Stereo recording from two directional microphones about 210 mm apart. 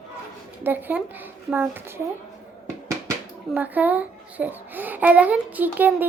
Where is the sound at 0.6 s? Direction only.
10° right (ahead or behind).